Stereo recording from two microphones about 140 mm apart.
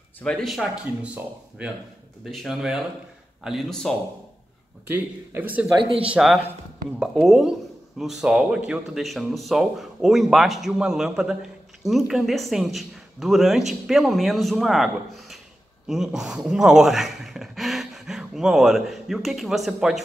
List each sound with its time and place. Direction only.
0.2 s speech: 5° left (ahead or behind)
4.9 s a man's voice: 10° right (ahead or behind)
5.8 s speech: 40° right (ahead or behind)
6.0 s speech: 5° right (ahead or behind)